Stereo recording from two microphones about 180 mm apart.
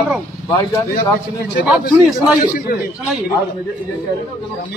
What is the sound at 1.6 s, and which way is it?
Speech, 5° right (ahead or behind).